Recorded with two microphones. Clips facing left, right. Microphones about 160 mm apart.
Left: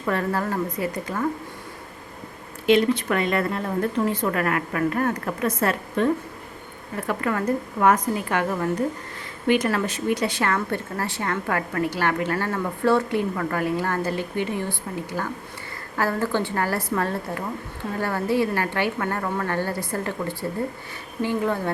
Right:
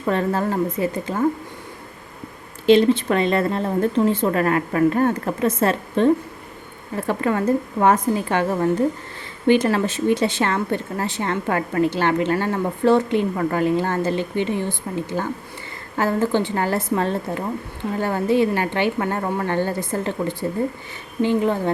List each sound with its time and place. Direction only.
0.0 s speech: 25° right (ahead or behind)
2.6 s speech: 30° right (ahead or behind)